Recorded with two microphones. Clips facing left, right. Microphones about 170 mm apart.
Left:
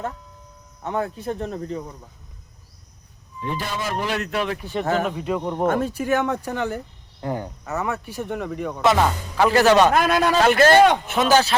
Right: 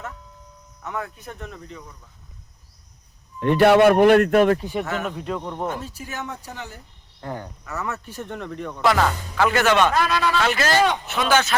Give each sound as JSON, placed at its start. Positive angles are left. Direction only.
{"t": 0.8, "sound": "speech", "side_deg": 30}
{"t": 3.4, "sound": "speech", "side_deg": -65}
{"t": 4.6, "sound": "speech", "side_deg": -10}
{"t": 5.0, "sound": "speech", "side_deg": 5}
{"t": 5.4, "sound": "speech", "side_deg": 15}
{"t": 5.6, "sound": "speech", "side_deg": 55}
{"t": 7.2, "sound": "frog", "side_deg": 15}
{"t": 7.7, "sound": "speech", "side_deg": 15}
{"t": 9.5, "sound": "speech", "side_deg": 35}
{"t": 9.9, "sound": "a man's voice", "side_deg": 50}